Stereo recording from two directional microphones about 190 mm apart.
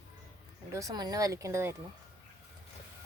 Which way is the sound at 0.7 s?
20° right (ahead or behind).